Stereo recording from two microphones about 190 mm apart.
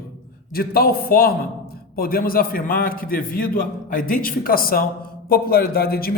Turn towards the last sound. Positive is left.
turn(degrees=55)  # may be behind; listen again after turning